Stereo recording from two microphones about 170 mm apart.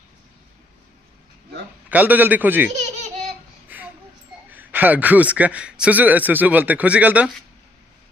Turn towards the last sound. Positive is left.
turn(degrees=-10)  # may be behind; listen again after turning